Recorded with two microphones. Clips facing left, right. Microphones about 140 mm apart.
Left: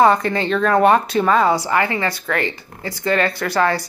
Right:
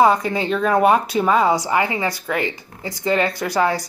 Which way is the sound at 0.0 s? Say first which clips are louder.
Left 1 dB; 10° right (ahead or behind).